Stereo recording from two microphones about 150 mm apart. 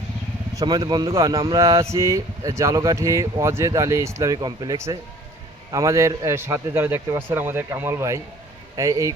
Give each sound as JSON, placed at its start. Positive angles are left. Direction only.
{"t": 0.5, "sound": "a man's voice", "side_deg": -30}